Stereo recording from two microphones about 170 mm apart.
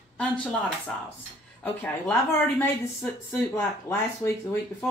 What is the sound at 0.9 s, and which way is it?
Speech, 5° left (ahead or behind).